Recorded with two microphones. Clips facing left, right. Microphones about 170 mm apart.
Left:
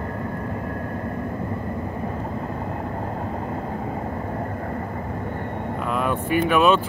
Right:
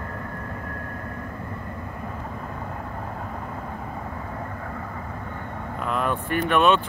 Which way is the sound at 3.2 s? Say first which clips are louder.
Left 6 dB; 30° left (ahead or behind).